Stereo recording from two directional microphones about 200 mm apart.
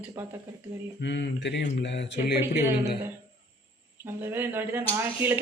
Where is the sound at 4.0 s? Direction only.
10° right (ahead or behind).